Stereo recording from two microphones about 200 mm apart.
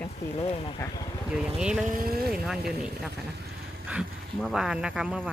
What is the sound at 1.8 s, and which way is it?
Speech, 45° right (ahead or behind).